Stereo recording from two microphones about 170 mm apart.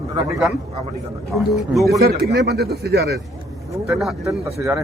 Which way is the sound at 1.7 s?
Centre (ahead or behind).